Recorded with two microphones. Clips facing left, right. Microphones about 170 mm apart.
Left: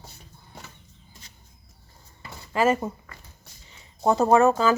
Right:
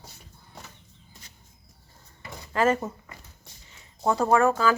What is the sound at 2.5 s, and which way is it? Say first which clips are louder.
Speech: left 1 dB; 10° left (ahead or behind).